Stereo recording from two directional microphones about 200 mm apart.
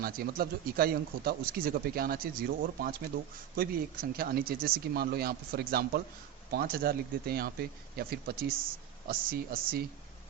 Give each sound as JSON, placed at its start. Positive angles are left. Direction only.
{"t": 0.0, "sound": "speech", "side_deg": -50}